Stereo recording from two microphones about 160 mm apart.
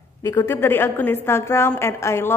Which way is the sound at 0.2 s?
15° left (ahead or behind).